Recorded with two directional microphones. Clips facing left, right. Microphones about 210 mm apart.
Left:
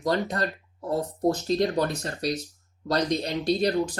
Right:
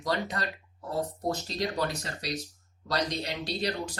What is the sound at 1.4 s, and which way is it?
Speech, 50° left (ahead or behind).